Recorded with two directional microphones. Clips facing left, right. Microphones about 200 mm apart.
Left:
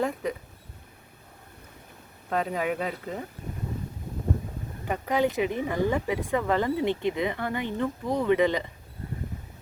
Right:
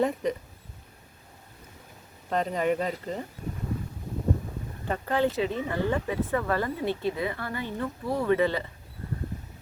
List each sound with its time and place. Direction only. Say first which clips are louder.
0.0 s speech: right 2 dB; centre (ahead or behind)
2.3 s speech: right 2 dB; 5° left (ahead or behind)
4.9 s speech: left 1 dB; 15° left (ahead or behind)